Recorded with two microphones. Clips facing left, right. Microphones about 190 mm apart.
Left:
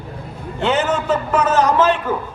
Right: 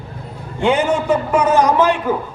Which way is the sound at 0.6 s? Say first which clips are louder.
Right 3 dB; 10° right (ahead or behind).